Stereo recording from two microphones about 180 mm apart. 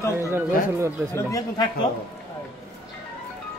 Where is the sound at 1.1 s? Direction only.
20° left (ahead or behind).